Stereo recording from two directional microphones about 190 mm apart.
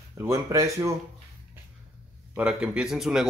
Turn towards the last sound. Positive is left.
turn(degrees=0)  # may be behind; listen again after turning